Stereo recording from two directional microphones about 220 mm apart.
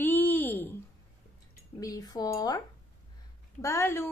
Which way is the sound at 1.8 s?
15° left (ahead or behind).